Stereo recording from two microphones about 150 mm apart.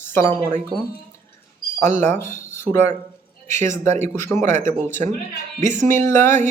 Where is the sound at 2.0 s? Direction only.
15° left (ahead or behind).